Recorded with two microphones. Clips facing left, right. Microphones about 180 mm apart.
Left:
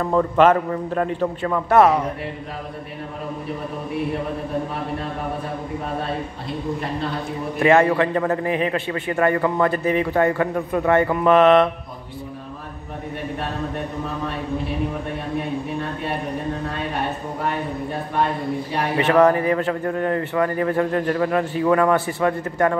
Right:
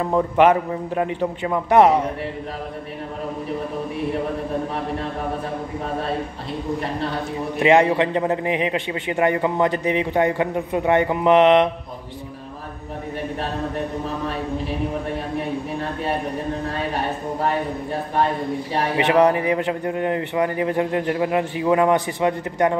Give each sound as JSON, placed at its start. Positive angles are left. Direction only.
{"t": 0.0, "sound": "a man's voice", "side_deg": -15}
{"t": 7.5, "sound": "a man's voice", "side_deg": -15}
{"t": 18.9, "sound": "a man's voice", "side_deg": -15}